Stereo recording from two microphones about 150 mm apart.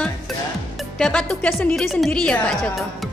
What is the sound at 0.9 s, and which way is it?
A woman's voice, 5° left (ahead or behind).